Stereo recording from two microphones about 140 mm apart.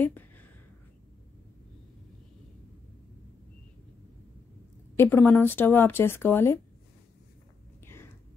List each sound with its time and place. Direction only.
0.0 s a sound: 15° left (ahead or behind)
4.9 s speech: 15° left (ahead or behind)
7.8 s whispering: 15° left (ahead or behind)